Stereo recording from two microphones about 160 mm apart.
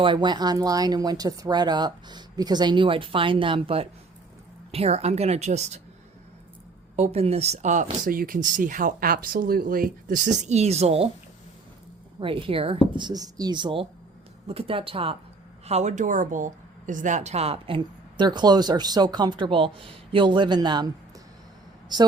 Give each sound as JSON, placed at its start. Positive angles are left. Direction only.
{"t": 0.0, "sound": "a woman's voice", "side_deg": -30}
{"t": 6.9, "sound": "speech", "side_deg": -40}
{"t": 12.2, "sound": "a woman's voice", "side_deg": -35}
{"t": 13.0, "sound": "a woman's voice", "side_deg": -25}